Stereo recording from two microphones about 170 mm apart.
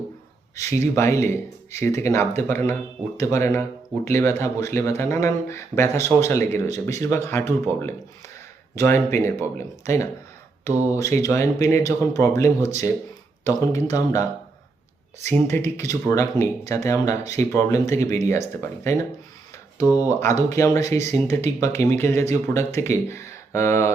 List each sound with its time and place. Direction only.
0.8 s speech: 15° left (ahead or behind)
11.2 s speech: 15° left (ahead or behind)
15.3 s speech: 15° left (ahead or behind)
20.0 s speech: 15° left (ahead or behind)